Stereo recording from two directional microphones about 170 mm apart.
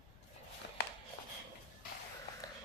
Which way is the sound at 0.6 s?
90° left.